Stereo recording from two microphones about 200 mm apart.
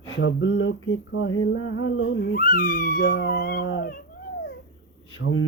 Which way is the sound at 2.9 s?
70° left (ahead or behind).